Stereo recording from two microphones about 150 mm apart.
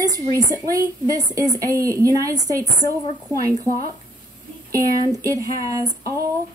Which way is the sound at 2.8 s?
25° left (ahead or behind).